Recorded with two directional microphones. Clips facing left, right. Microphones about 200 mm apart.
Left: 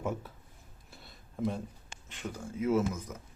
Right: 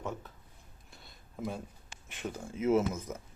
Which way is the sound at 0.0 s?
10° left (ahead or behind).